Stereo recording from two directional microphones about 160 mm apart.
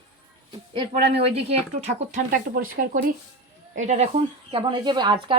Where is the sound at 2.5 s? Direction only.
65° right (ahead or behind).